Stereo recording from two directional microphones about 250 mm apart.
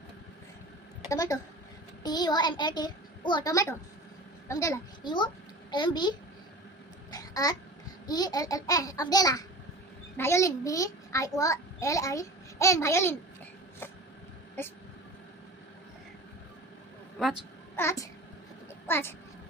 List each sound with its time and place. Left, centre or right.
1.1 s a child's voice: centre
7.1 s babbling: centre
8.0 s a child's voice: centre
17.7 s a child's voice: centre